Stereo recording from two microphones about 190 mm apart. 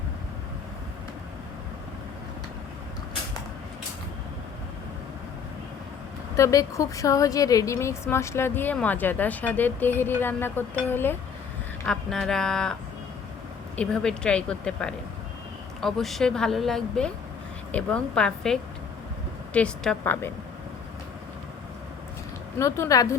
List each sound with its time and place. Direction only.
6.3 s a woman's voice: 15° left (ahead or behind)
13.7 s a woman's voice: 5° left (ahead or behind)
22.5 s a woman's voice: 15° left (ahead or behind)